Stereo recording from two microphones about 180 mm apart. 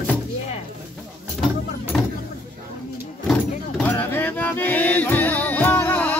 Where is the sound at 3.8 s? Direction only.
10° left (ahead or behind).